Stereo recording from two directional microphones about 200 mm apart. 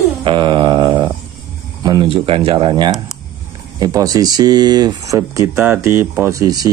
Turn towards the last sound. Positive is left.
turn(degrees=-20)  # may be behind; listen again after turning